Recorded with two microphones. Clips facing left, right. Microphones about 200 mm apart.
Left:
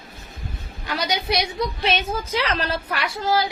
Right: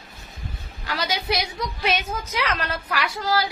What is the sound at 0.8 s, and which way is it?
A woman's voice, 20° left (ahead or behind).